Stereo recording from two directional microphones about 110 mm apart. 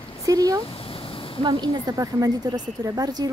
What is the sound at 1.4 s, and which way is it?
Speech, 45° right (ahead or behind).